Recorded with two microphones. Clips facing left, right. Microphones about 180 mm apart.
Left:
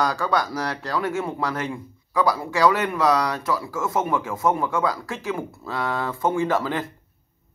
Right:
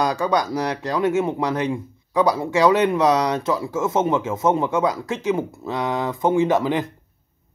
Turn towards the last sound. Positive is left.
turn(degrees=-20)  # may be behind; listen again after turning